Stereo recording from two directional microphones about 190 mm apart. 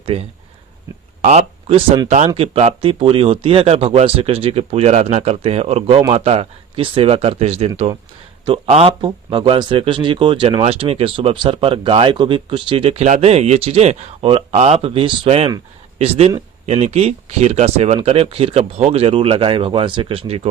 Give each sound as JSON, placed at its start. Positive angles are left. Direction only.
{"t": 0.0, "sound": "speech", "side_deg": -30}